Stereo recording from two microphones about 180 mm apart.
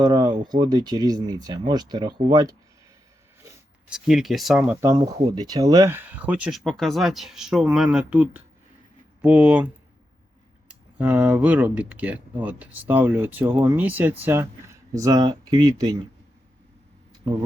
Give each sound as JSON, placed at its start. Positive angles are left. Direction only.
{"t": 0.0, "sound": "speech", "side_deg": -20}
{"t": 3.4, "sound": "speech", "side_deg": -5}
{"t": 4.8, "sound": "speech", "side_deg": -20}
{"t": 10.7, "sound": "speech", "side_deg": -10}